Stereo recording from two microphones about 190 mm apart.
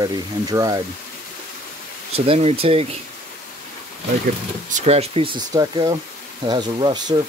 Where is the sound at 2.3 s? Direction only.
35° right (ahead or behind).